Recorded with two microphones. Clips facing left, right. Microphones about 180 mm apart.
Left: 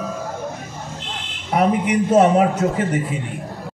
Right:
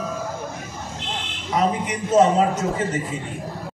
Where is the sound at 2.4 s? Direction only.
65° left (ahead or behind).